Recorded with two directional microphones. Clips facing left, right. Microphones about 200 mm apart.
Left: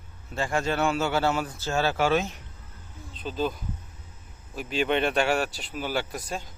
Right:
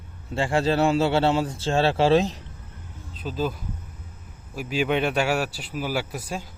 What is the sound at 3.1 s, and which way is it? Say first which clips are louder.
A man's voice: right 1 dB; 5° right (ahead or behind).